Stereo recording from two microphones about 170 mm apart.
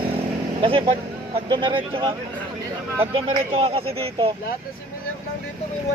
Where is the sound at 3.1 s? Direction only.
35° right (ahead or behind).